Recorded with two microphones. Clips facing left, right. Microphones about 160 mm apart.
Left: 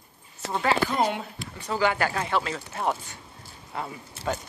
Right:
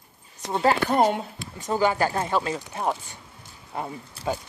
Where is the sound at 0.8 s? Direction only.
50° right (ahead or behind).